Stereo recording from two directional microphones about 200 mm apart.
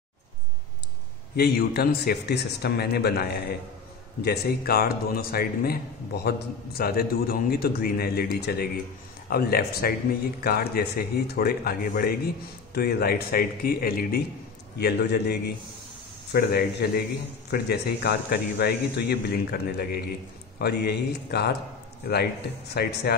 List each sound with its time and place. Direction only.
1.3 s a man's voice: 50° left (ahead or behind)